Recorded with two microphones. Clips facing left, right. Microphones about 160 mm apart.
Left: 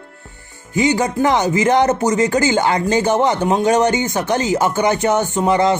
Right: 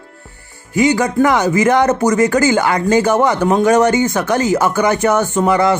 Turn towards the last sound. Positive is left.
turn(degrees=20)  # may be behind; listen again after turning